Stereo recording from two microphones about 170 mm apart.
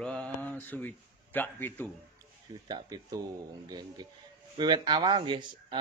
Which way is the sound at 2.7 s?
20° right (ahead or behind).